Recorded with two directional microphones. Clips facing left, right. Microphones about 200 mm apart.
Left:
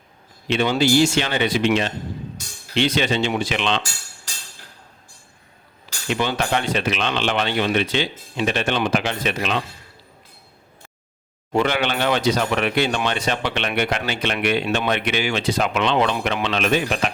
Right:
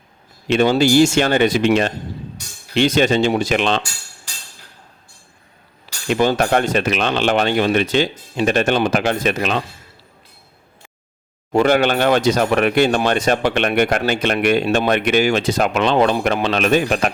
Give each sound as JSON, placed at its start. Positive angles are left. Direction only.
{"t": 0.4, "sound": "speech", "side_deg": -45}
{"t": 6.1, "sound": "speech", "side_deg": -45}
{"t": 11.5, "sound": "speech", "side_deg": -45}